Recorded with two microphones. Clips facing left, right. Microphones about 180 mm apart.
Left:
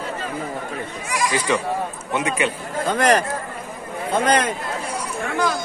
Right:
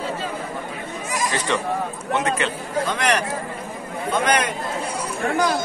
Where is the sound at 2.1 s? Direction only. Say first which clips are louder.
Left 1 dB; 10° left (ahead or behind).